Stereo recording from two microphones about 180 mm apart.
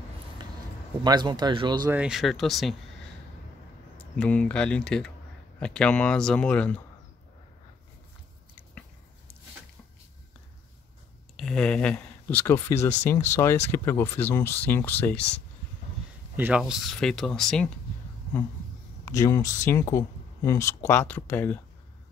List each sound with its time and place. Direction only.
1.0 s speech: 25° right (ahead or behind)
1.9 s speech: 5° right (ahead or behind)
4.0 s speech: 5° left (ahead or behind)
11.3 s speech: 5° left (ahead or behind)
16.3 s speech: 5° right (ahead or behind)
19.0 s speech: 20° left (ahead or behind)